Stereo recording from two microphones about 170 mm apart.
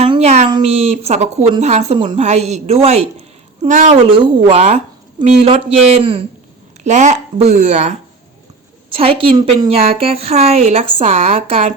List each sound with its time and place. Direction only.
0.1 s a sound: 40° right (ahead or behind)
0.5 s a woman's voice: 35° right (ahead or behind)
4.1 s a woman's voice: 30° right (ahead or behind)
6.8 s a woman's voice: 45° right (ahead or behind)